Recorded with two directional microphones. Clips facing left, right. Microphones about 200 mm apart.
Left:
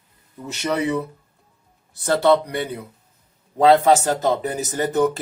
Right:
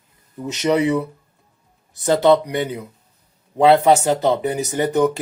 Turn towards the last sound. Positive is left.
turn(degrees=-15)  # may be behind; listen again after turning